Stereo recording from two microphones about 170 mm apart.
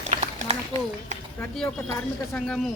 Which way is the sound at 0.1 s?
40° right (ahead or behind).